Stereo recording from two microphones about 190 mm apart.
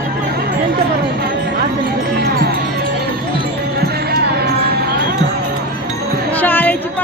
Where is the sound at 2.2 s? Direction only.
55° right (ahead or behind).